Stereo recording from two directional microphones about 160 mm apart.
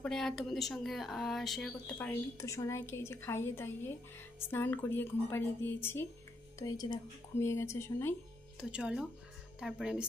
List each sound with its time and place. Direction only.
0.0 s speech: centre (ahead or behind)
8.5 s speech: 5° right (ahead or behind)